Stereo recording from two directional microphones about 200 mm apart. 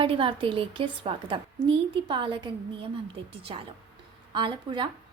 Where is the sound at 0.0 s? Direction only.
25° right (ahead or behind).